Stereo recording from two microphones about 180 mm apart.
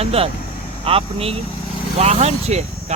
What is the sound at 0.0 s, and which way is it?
Speech, 35° right (ahead or behind).